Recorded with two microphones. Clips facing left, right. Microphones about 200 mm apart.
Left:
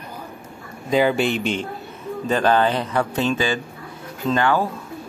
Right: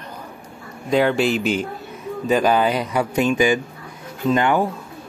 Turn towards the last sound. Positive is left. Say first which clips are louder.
# right 2 dB
turn(degrees=-20)  # may be behind; listen again after turning